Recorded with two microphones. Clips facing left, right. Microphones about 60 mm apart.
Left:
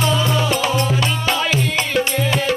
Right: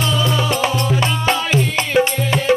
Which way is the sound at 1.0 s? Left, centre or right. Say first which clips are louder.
Right 2 dB; right.